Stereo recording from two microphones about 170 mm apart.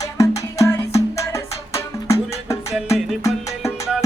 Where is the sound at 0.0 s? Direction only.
20° left (ahead or behind).